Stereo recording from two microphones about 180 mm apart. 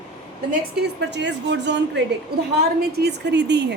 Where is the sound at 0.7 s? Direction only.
75° right (ahead or behind).